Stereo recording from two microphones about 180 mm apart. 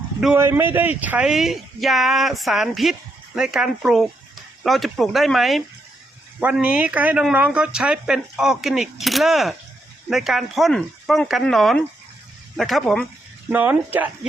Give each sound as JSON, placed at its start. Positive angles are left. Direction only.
{"t": 0.3, "sound": "speech", "side_deg": -15}
{"t": 13.5, "sound": "speech", "side_deg": -10}